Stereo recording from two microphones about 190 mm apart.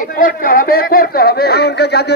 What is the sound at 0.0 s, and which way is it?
Speech, 45° left (ahead or behind).